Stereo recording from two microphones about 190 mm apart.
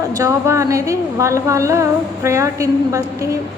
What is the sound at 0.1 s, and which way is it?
A woman's voice, 15° right (ahead or behind).